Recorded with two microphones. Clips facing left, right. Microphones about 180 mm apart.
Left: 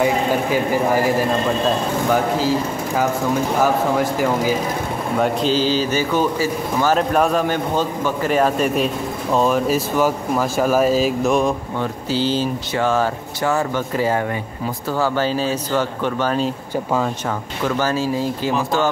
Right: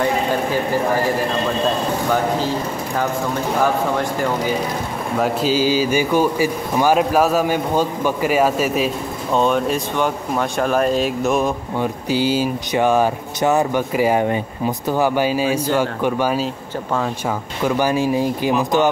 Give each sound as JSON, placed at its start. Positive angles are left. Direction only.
{"t": 0.0, "sound": "speech", "side_deg": 10}
{"t": 5.2, "sound": "speech", "side_deg": -5}
{"t": 11.8, "sound": "speech", "side_deg": -15}
{"t": 17.6, "sound": "speech", "side_deg": -15}